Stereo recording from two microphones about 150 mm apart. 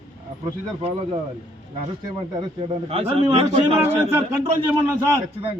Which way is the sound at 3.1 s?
40° right (ahead or behind).